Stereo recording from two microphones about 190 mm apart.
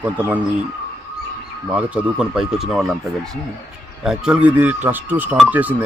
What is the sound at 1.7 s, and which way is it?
A man's voice, 10° right (ahead or behind).